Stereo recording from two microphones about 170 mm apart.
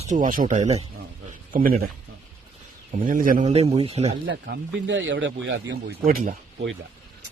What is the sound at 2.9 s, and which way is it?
Speech, 50° right (ahead or behind).